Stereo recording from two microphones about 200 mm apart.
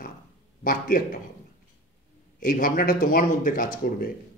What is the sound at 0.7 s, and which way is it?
Speech, 45° left (ahead or behind).